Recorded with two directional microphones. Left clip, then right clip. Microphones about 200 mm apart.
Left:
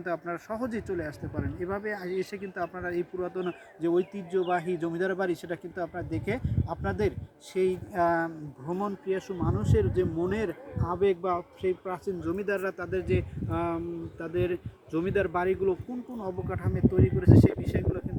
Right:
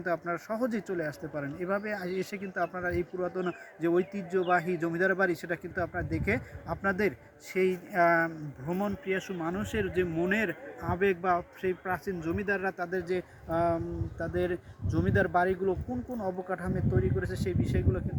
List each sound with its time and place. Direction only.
0.0 s speech: 10° right (ahead or behind)
16.2 s speech: 5° right (ahead or behind)